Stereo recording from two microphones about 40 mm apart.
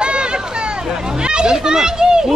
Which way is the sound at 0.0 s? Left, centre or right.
Right.